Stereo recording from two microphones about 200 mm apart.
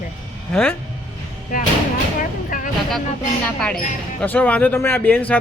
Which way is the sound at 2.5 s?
45° left (ahead or behind).